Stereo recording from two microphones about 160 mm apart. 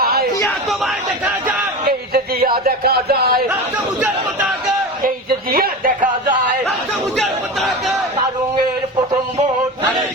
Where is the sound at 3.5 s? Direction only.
10° right (ahead or behind).